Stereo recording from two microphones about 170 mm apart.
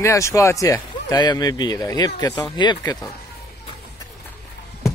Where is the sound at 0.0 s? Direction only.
20° left (ahead or behind).